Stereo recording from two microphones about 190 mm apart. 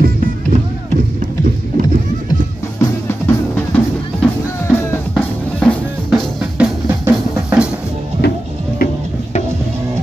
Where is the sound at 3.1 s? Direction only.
10° left (ahead or behind).